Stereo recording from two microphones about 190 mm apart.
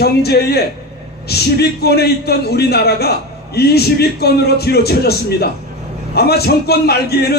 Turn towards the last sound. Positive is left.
turn(degrees=55)  # may be behind; listen again after turning